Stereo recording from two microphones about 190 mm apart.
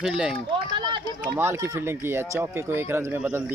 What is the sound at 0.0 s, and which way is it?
Speech, 5° right (ahead or behind).